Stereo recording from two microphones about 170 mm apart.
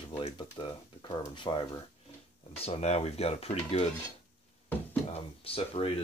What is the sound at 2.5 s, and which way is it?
Speech, 35° left (ahead or behind).